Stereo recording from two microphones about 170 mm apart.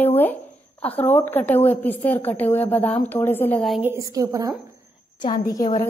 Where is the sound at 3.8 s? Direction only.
20° right (ahead or behind).